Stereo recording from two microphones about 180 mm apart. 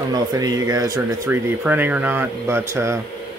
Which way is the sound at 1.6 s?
10° right (ahead or behind).